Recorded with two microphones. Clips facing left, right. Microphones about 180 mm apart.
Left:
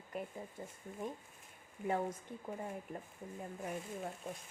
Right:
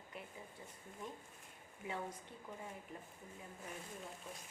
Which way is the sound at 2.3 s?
45° left (ahead or behind).